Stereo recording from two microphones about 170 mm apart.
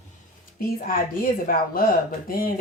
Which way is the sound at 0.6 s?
55° left (ahead or behind).